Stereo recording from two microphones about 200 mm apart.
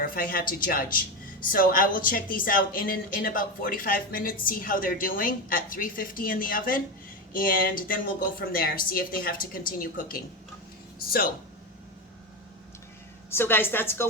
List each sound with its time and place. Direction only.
0.0 s speech: 45° left (ahead or behind)
13.3 s a woman's voice: 10° left (ahead or behind)